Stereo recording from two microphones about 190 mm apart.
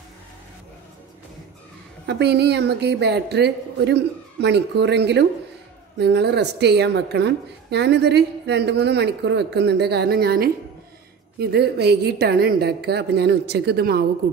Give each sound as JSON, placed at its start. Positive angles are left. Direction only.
{"t": 2.0, "sound": "a woman's voice", "side_deg": -60}